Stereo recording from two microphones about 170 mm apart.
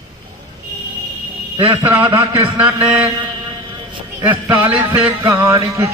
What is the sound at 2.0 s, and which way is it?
Speech, 25° right (ahead or behind).